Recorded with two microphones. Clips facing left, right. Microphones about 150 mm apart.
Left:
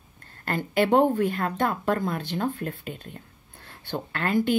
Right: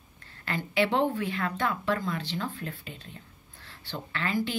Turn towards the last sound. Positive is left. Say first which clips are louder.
# left 6 dB
turn(degrees=55)  # may be behind; listen again after turning